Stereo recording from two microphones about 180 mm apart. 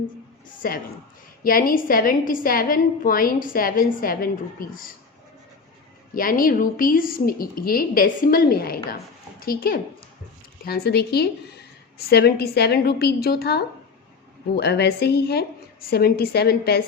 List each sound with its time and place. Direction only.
0.6 s a woman's voice: 55° left (ahead or behind)
6.1 s a woman's voice: 50° left (ahead or behind)